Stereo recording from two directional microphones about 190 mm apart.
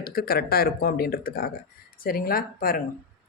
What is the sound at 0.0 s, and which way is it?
Speech, 55° left (ahead or behind).